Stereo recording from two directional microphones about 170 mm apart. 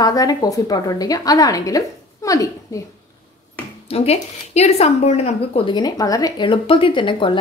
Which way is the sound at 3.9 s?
40° left (ahead or behind).